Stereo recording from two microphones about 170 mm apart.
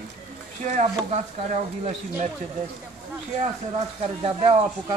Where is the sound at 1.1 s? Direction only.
45° right (ahead or behind).